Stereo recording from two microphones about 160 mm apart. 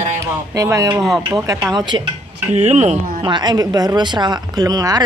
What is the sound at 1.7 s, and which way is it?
Speech, 30° right (ahead or behind).